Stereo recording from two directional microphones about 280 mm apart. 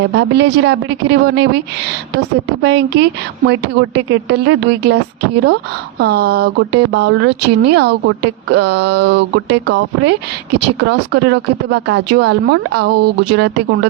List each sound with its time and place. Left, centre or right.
0.0 s a woman's voice: right
6.0 s a woman's voice: right